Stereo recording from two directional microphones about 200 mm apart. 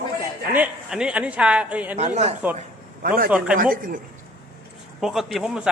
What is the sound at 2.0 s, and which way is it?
Speech, 30° right (ahead or behind).